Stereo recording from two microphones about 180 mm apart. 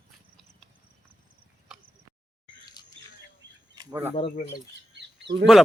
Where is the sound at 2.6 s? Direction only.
20° left (ahead or behind).